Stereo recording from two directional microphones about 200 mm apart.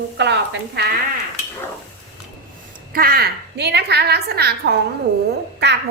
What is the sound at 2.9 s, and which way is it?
A woman's voice, 50° right (ahead or behind).